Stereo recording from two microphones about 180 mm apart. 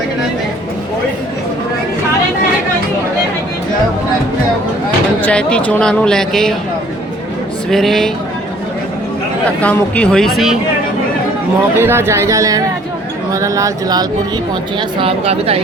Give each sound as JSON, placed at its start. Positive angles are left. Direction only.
{"t": 5.2, "sound": "speech", "side_deg": 5}
{"t": 7.7, "sound": "speech", "side_deg": 0}
{"t": 9.6, "sound": "speech", "side_deg": 10}
{"t": 11.8, "sound": "speech", "side_deg": -15}